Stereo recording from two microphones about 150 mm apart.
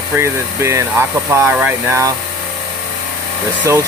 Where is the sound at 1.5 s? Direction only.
5° right (ahead or behind).